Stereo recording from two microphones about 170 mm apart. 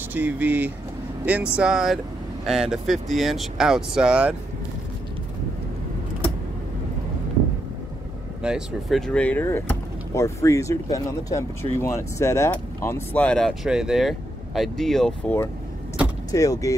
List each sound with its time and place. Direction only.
0.1 s speech: 10° right (ahead or behind)
8.4 s speech: 5° right (ahead or behind)
16.3 s speech: 20° left (ahead or behind)